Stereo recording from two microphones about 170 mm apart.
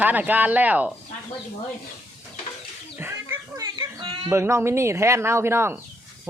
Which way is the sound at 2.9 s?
15° right (ahead or behind).